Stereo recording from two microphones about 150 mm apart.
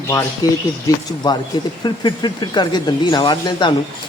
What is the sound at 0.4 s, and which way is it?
Speech, 25° left (ahead or behind).